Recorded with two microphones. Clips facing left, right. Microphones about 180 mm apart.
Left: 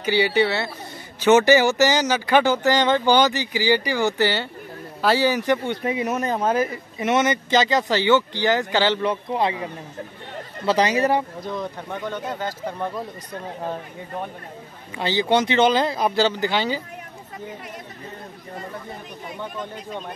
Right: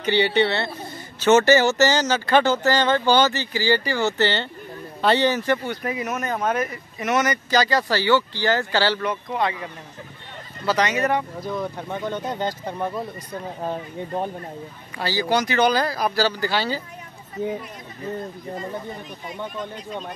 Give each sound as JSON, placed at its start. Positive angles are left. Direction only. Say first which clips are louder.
{"t": 0.0, "sound": "speech", "louder": "even", "side_deg": 10}
{"t": 11.4, "sound": "speech", "louder": "right 1 dB", "side_deg": -5}
{"t": 15.0, "sound": "speech", "louder": "left 2 dB", "side_deg": 20}